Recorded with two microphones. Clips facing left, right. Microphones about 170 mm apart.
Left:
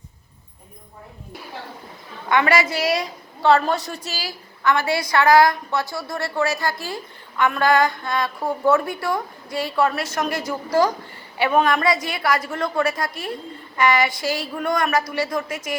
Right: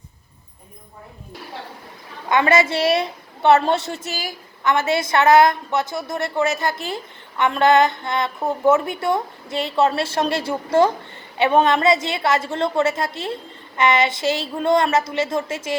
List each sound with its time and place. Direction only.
2.3 s a woman's voice: 25° right (ahead or behind)